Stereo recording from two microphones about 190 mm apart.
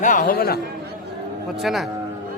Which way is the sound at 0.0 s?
45° left (ahead or behind).